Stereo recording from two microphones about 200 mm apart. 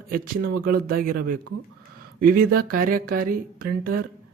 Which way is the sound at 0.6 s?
45° right (ahead or behind).